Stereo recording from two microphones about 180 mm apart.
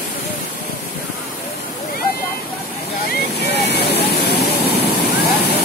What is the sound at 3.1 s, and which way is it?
Waves, 65° left (ahead or behind).